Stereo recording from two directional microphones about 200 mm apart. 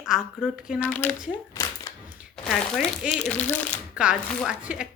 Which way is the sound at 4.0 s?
5° right (ahead or behind).